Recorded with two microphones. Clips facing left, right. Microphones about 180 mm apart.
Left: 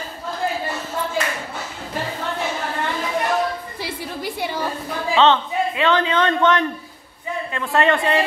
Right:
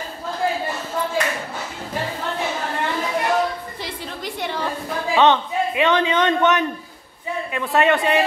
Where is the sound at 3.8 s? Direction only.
10° left (ahead or behind).